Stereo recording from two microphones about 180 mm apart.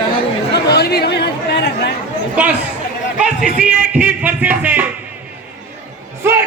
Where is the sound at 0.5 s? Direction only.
65° left (ahead or behind).